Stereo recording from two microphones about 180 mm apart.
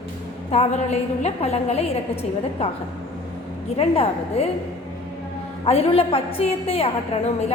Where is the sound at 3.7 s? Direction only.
35° left (ahead or behind).